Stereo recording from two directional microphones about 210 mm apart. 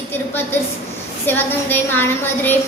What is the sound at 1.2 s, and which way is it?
A woman's voice, 10° left (ahead or behind).